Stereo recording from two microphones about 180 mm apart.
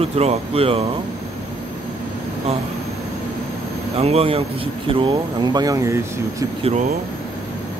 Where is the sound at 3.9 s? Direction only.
35° right (ahead or behind); by 6.4 s 15° right (ahead or behind).